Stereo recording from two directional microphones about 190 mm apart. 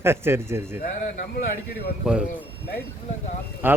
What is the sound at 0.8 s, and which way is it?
Speech, 45° left (ahead or behind).